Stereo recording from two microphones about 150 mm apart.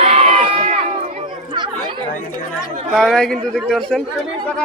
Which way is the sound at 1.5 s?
30° right (ahead or behind).